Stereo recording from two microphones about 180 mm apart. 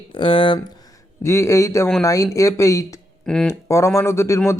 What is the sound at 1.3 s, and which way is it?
Speech, 15° left (ahead or behind).